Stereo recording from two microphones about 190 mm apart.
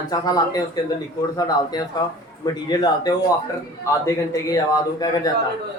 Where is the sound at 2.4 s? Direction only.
20° left (ahead or behind).